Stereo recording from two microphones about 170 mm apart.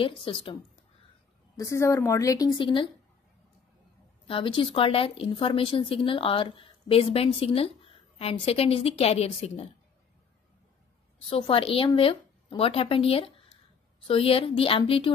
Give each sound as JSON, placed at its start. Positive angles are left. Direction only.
{"t": 0.0, "sound": "a woman's voice", "side_deg": 30}
{"t": 1.6, "sound": "a woman's voice", "side_deg": 15}
{"t": 4.3, "sound": "a woman's voice", "side_deg": 30}
{"t": 11.2, "sound": "a woman's voice", "side_deg": 30}